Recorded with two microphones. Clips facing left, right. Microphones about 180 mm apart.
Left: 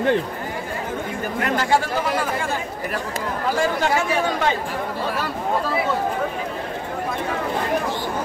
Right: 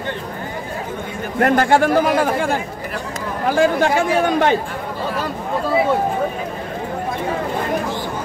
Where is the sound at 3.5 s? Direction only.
60° right (ahead or behind).